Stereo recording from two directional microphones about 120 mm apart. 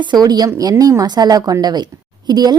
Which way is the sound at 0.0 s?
40° right (ahead or behind).